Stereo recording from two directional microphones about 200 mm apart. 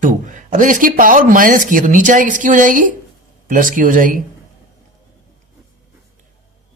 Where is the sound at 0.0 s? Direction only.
40° right (ahead or behind).